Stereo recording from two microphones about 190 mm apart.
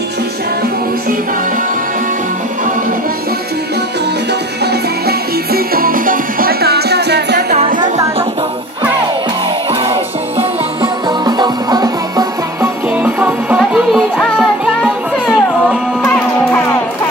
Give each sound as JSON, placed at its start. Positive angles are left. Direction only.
{"t": 4.6, "sound": "music", "side_deg": -55}
{"t": 10.3, "sound": "music", "side_deg": -25}
{"t": 12.9, "sound": "music", "side_deg": -10}